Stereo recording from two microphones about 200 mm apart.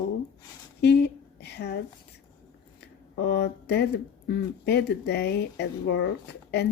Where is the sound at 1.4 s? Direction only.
55° left (ahead or behind).